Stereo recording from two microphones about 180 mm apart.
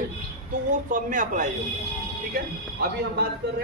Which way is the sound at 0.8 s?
50° right (ahead or behind).